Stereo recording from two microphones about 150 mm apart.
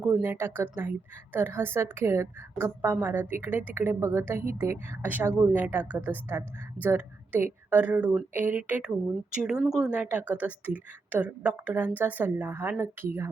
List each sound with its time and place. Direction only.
0.0 s a woman's voice: 10° right (ahead or behind)